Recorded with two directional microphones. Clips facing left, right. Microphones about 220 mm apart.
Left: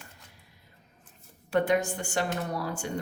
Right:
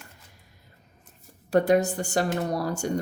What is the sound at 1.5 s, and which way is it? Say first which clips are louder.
Speech: right 5 dB; 40° right (ahead or behind).